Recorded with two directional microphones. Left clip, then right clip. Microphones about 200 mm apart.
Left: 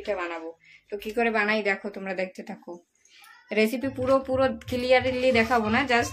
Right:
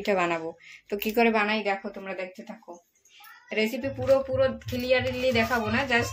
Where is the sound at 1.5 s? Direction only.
10° left (ahead or behind).